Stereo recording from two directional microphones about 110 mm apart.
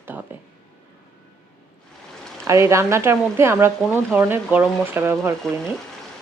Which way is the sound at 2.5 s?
25° right (ahead or behind).